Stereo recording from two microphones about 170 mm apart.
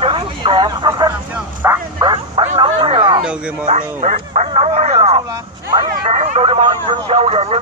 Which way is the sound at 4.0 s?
45° right (ahead or behind).